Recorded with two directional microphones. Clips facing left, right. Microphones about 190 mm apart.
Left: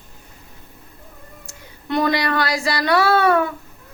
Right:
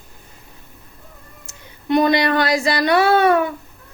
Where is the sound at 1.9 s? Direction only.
20° right (ahead or behind).